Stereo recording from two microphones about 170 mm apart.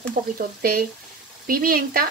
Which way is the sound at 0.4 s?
60° right (ahead or behind).